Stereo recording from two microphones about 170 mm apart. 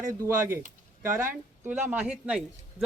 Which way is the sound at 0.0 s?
15° right (ahead or behind).